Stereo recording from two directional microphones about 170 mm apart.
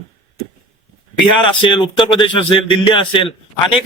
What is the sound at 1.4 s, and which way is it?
Speech, 30° left (ahead or behind).